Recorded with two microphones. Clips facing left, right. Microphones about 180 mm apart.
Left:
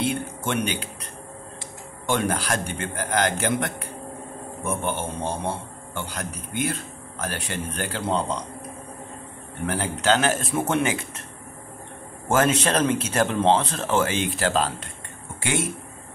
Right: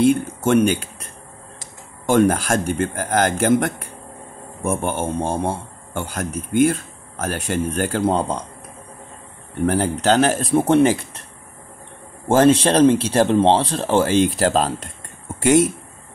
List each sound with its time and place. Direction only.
0.0 s speech: 45° right (ahead or behind)
9.7 s speech: 40° right (ahead or behind)
12.3 s speech: 30° right (ahead or behind)